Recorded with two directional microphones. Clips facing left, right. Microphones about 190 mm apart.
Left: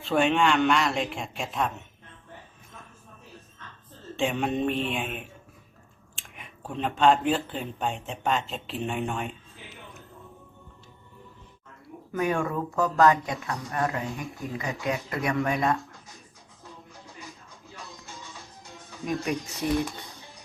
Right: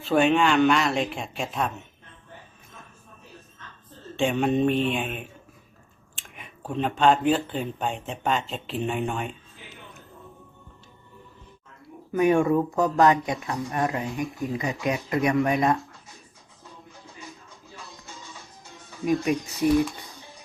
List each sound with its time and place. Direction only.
0.0 s speech: centre (ahead or behind)
4.2 s speech: centre (ahead or behind)
6.1 s chewing: centre (ahead or behind)
6.7 s speech: centre (ahead or behind)
12.1 s speech: 15° right (ahead or behind)
18.9 s speech: centre (ahead or behind)